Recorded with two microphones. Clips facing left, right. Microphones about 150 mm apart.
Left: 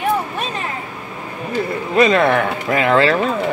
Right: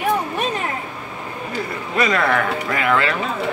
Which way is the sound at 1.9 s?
25° left (ahead or behind).